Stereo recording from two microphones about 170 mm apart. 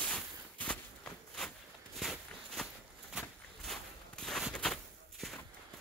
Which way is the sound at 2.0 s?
Centre (ahead or behind).